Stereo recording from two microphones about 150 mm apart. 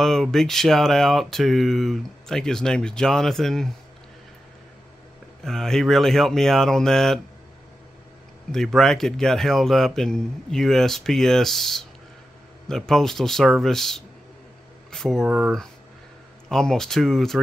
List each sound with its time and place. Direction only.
0.0 s speech: 5° left (ahead or behind)
5.4 s speech: 5° left (ahead or behind)
8.5 s speech: 5° left (ahead or behind)